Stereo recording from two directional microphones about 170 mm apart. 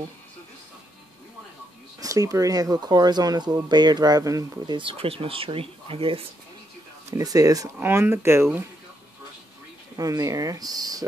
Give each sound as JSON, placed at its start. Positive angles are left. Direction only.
{"t": 2.0, "sound": "speech", "side_deg": -20}
{"t": 7.1, "sound": "speech", "side_deg": -20}
{"t": 9.9, "sound": "speech", "side_deg": -20}